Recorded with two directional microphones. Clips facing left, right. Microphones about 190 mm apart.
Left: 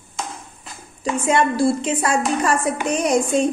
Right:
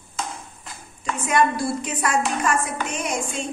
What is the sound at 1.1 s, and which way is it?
A woman's voice, 25° left (ahead or behind).